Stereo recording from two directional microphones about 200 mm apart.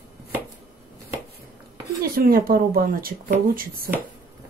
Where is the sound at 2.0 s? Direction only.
45° right (ahead or behind).